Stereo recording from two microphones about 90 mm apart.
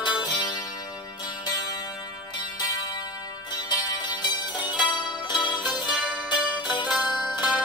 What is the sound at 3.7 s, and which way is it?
Music, 55° left (ahead or behind).